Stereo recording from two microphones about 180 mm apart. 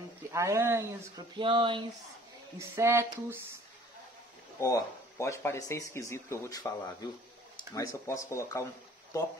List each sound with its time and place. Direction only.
0.3 s speech: 15° right (ahead or behind)
2.6 s speech: 15° right (ahead or behind)
4.6 s speech: 15° left (ahead or behind)
7.7 s speech: 20° left (ahead or behind)